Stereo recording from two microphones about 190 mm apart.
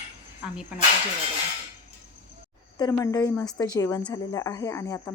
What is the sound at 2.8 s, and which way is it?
Speech, 20° left (ahead or behind).